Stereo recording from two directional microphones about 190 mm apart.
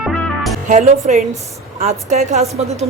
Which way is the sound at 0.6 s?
40° right (ahead or behind).